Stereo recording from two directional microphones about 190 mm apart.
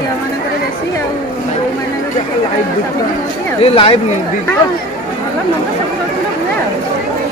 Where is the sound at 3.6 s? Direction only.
30° left (ahead or behind).